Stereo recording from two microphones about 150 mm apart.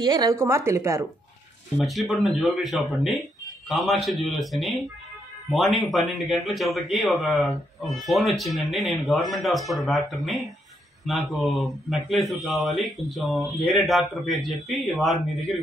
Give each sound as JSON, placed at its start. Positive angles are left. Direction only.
{"t": 0.0, "sound": "a woman's voice", "side_deg": -25}
{"t": 1.9, "sound": "speech", "side_deg": 0}